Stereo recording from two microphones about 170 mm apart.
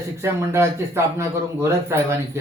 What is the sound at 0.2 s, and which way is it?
A man's voice, 15° right (ahead or behind).